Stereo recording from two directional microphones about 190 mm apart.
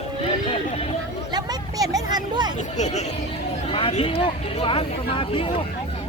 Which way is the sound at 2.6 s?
40° left (ahead or behind).